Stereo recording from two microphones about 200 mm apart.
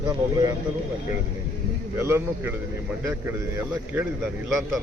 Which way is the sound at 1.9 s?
10° right (ahead or behind).